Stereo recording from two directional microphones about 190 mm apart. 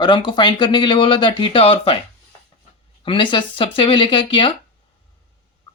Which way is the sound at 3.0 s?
25° left (ahead or behind).